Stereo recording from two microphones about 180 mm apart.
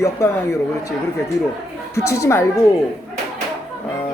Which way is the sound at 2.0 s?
15° left (ahead or behind).